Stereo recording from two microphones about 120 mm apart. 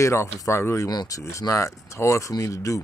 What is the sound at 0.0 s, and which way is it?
Speech, 20° left (ahead or behind).